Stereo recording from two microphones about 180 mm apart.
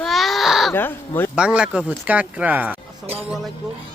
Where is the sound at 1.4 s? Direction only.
5° right (ahead or behind).